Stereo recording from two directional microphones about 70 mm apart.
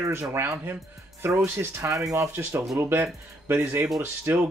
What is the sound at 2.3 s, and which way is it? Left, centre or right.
Speech, right.